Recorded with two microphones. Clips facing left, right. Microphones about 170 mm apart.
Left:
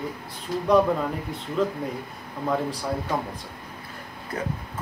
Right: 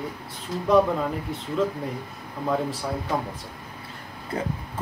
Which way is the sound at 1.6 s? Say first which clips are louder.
Even; centre (ahead or behind).